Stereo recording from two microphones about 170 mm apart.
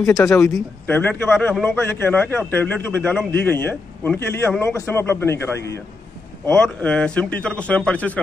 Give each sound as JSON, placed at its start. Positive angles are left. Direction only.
{"t": 0.0, "sound": "a man's voice", "side_deg": 15}